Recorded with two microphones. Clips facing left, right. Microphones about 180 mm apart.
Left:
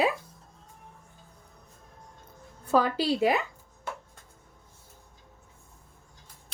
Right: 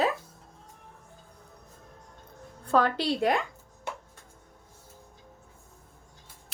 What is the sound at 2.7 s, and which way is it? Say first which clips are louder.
Speech: even; 5° left (ahead or behind).